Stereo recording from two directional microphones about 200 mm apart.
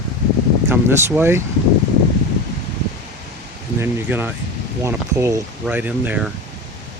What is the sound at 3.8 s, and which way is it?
Speech, 10° right (ahead or behind).